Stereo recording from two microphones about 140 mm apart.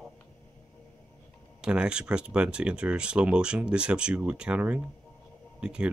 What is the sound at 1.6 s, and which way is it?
Speech, 5° right (ahead or behind).